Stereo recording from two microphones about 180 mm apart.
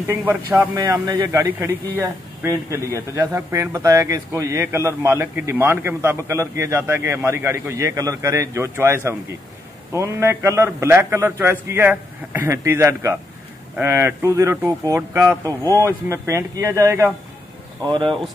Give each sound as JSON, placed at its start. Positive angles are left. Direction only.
{"t": 0.0, "sound": "a man's voice", "side_deg": -15}